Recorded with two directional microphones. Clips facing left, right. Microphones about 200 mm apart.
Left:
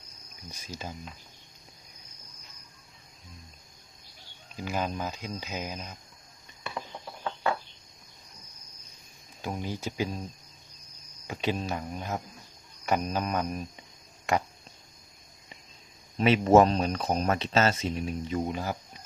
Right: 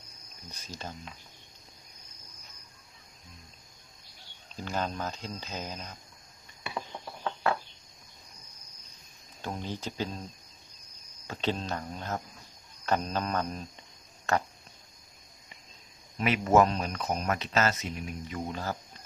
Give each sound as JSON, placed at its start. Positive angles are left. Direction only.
{"t": 0.5, "sound": "speech", "side_deg": 10}
{"t": 4.5, "sound": "speech", "side_deg": 10}
{"t": 9.4, "sound": "speech", "side_deg": 10}
{"t": 11.3, "sound": "speech", "side_deg": 10}
{"t": 16.1, "sound": "speech", "side_deg": 25}